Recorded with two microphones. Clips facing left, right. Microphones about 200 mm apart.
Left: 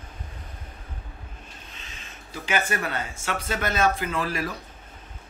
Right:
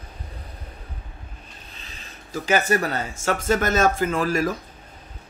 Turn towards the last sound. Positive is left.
turn(degrees=-45)  # may be behind; listen again after turning